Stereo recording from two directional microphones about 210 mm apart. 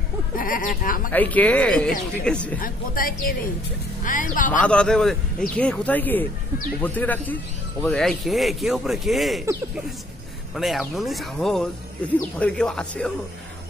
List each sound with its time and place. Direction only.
0.4 s speech: 40° left (ahead or behind)
1.1 s speech: 5° left (ahead or behind)
2.6 s speech: 45° left (ahead or behind)
4.5 s speech: 5° left (ahead or behind)
10.5 s speech: centre (ahead or behind)